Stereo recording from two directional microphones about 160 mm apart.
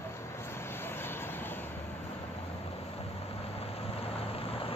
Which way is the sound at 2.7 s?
40° left (ahead or behind).